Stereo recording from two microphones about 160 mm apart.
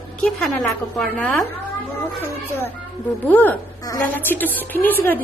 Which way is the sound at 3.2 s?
10° left (ahead or behind).